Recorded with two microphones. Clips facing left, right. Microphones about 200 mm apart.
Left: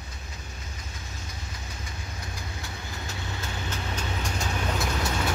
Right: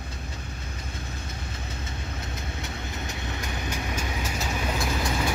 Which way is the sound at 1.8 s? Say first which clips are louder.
Right 4 dB; 25° right (ahead or behind).